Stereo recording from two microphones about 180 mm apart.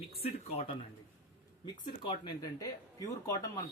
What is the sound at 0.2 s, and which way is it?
Speech, 35° left (ahead or behind).